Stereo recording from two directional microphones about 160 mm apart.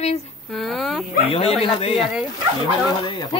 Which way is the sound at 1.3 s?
35° left (ahead or behind).